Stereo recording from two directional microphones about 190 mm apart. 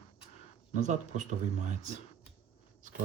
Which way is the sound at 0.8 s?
40° right (ahead or behind).